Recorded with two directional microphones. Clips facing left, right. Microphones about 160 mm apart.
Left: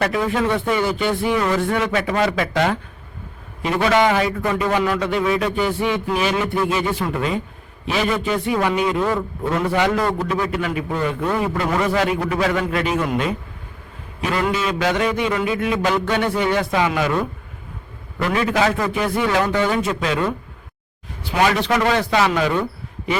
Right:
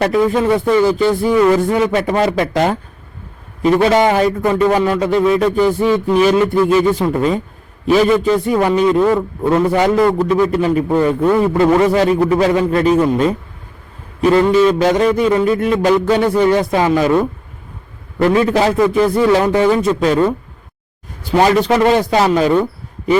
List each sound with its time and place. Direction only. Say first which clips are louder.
0.0 s a man's voice: right 6 dB; 35° right (ahead or behind)
3.8 s a man's voice: right 3 dB; 35° right (ahead or behind)
21.3 s a man's voice: right 6 dB; 35° right (ahead or behind)